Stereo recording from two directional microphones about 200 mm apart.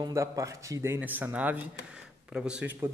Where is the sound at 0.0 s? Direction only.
15° right (ahead or behind).